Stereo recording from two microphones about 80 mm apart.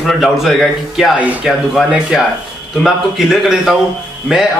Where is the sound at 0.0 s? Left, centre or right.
Centre.